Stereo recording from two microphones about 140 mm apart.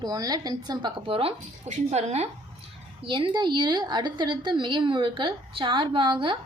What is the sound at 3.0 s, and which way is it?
A woman's voice, 40° right (ahead or behind).